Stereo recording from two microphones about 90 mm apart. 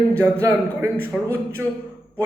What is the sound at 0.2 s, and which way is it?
Speech, 30° right (ahead or behind).